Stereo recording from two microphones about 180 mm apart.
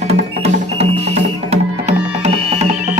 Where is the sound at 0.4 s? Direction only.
35° right (ahead or behind).